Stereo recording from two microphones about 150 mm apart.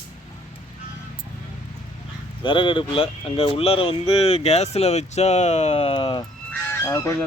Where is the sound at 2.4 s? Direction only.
30° left (ahead or behind).